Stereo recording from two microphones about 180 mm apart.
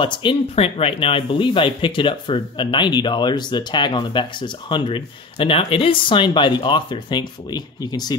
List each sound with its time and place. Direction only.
0.0 s speech: 25° left (ahead or behind)